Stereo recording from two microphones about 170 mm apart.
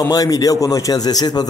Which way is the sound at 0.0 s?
20° left (ahead or behind).